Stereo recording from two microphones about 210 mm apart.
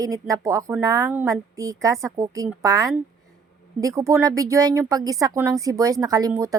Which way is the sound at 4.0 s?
15° right (ahead or behind).